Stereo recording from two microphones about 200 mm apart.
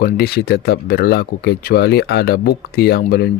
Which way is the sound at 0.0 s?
50° left (ahead or behind).